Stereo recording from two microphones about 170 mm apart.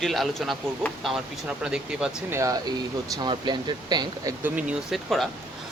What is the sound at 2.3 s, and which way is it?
Speech, 20° right (ahead or behind).